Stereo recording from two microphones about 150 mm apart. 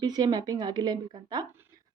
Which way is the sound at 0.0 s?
25° right (ahead or behind).